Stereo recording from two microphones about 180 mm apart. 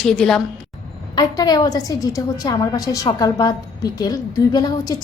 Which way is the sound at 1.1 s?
20° left (ahead or behind).